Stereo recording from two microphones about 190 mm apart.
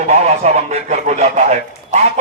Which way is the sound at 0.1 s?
35° right (ahead or behind).